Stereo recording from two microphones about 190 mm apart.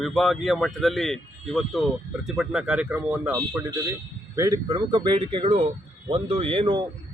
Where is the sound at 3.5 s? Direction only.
15° right (ahead or behind).